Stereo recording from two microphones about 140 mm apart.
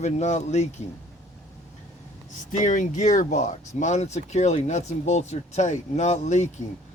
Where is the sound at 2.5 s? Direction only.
65° left (ahead or behind).